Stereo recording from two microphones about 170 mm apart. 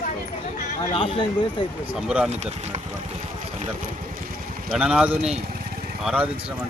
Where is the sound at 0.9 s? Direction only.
30° left (ahead or behind).